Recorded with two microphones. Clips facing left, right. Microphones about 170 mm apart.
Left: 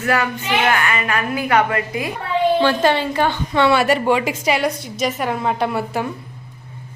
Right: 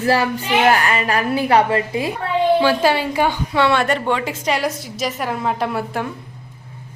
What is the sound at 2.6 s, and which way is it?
A woman's voice, 10° right (ahead or behind).